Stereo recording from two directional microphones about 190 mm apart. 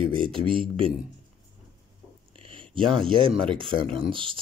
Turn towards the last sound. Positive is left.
turn(degrees=-25)  # may be behind; listen again after turning